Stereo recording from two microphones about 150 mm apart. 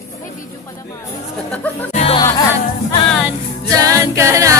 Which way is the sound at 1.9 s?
40° left (ahead or behind).